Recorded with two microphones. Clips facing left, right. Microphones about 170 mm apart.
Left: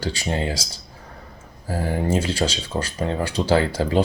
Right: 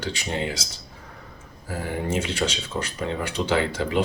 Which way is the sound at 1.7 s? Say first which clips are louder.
Left 4 dB; 35° left (ahead or behind).